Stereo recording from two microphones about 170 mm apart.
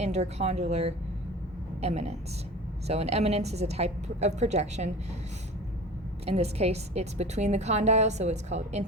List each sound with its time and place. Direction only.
0.0 s a woman's voice: 40° right (ahead or behind)
6.2 s a woman's voice: 40° right (ahead or behind)